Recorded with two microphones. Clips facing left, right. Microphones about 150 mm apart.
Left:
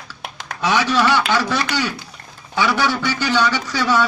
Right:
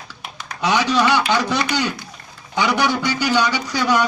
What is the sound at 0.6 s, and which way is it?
A man's voice, 15° right (ahead or behind).